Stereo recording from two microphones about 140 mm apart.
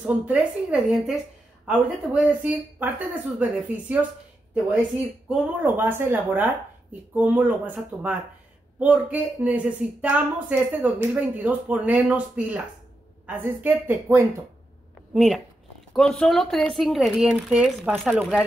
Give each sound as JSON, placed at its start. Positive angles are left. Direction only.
{"t": 0.0, "sound": "speech", "side_deg": -10}
{"t": 5.3, "sound": "speech", "side_deg": -15}
{"t": 15.1, "sound": "speech", "side_deg": 0}